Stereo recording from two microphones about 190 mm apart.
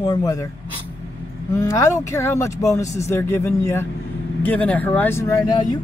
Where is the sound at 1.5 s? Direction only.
15° left (ahead or behind).